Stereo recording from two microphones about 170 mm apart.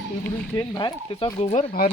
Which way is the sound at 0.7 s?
30° left (ahead or behind).